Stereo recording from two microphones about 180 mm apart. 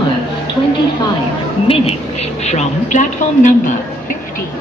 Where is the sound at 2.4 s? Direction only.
40° left (ahead or behind).